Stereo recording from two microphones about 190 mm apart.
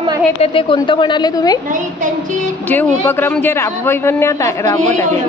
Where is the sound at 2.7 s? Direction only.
10° left (ahead or behind).